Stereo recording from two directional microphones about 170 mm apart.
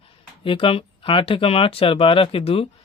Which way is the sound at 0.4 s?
30° left (ahead or behind).